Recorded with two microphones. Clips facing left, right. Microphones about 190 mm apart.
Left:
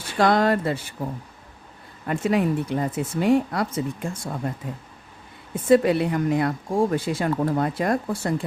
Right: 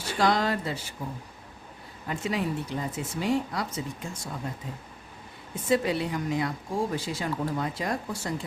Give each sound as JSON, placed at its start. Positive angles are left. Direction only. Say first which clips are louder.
{"t": 0.2, "sound": "speech", "louder": "left 6 dB", "side_deg": 55}
{"t": 2.0, "sound": "speech", "louder": "left 8 dB", "side_deg": 55}
{"t": 5.6, "sound": "speech", "louder": "left 8 dB", "side_deg": 55}